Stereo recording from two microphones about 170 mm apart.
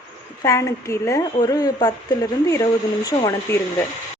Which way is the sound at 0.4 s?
15° left (ahead or behind).